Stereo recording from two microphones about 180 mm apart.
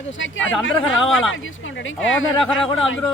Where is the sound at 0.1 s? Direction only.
90° left.